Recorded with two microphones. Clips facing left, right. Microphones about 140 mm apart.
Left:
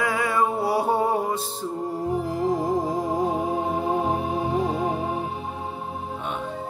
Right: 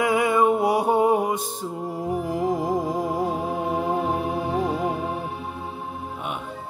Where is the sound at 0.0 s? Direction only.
20° right (ahead or behind).